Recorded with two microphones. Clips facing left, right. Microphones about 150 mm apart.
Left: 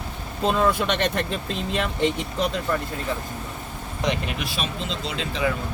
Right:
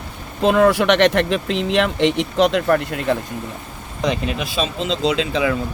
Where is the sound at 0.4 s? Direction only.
70° right (ahead or behind).